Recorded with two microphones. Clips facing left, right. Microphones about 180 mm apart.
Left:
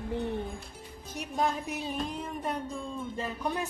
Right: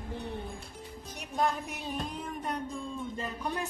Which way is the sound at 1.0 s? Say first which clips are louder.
Left 1 dB; centre (ahead or behind).